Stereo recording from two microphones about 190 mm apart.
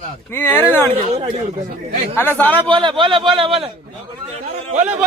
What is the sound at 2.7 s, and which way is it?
A man's voice, 25° right (ahead or behind).